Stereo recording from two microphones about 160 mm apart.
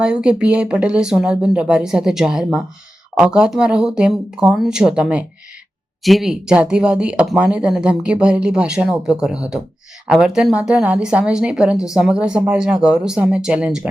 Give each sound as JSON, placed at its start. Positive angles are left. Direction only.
{"t": 0.0, "sound": "speech", "side_deg": -5}